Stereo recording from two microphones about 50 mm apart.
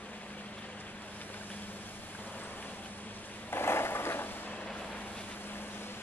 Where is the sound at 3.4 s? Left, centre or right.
Left.